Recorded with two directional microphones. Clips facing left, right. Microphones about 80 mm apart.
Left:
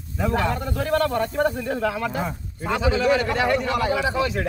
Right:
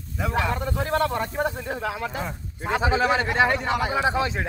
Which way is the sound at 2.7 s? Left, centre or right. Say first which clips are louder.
Left 1 dB; right.